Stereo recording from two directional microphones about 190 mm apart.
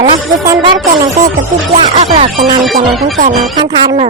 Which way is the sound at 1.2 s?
45° right (ahead or behind).